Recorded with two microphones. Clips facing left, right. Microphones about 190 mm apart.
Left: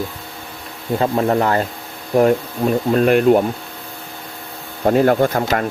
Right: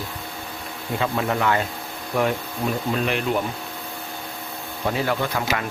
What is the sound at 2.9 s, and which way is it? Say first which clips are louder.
Speech: left 13 dB; 50° left (ahead or behind).